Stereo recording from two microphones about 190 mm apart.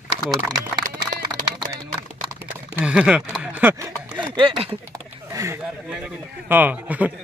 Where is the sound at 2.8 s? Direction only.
5° right (ahead or behind); by 4.7 s 30° right (ahead or behind).